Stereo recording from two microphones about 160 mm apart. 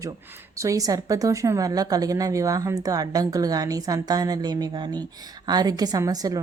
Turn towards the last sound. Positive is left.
turn(degrees=-20)  # may be behind; listen again after turning